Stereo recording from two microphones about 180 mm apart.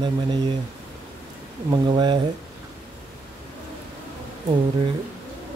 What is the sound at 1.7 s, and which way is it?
Speech, 25° right (ahead or behind).